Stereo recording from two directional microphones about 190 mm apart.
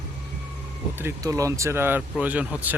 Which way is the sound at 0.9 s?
15° right (ahead or behind).